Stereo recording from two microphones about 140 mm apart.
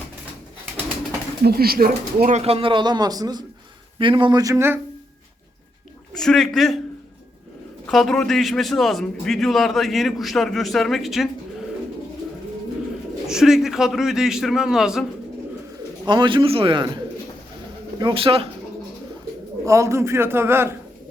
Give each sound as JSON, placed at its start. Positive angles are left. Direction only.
{"t": 1.5, "sound": "speech", "side_deg": -90}
{"t": 2.3, "sound": "a man's voice", "side_deg": -45}
{"t": 6.1, "sound": "a man's voice", "side_deg": 5}
{"t": 7.9, "sound": "a man's voice", "side_deg": 5}
{"t": 13.2, "sound": "a man's voice", "side_deg": -5}
{"t": 16.0, "sound": "a man's voice", "side_deg": -35}
{"t": 18.0, "sound": "a man's voice", "side_deg": -40}
{"t": 19.6, "sound": "a man's voice", "side_deg": -20}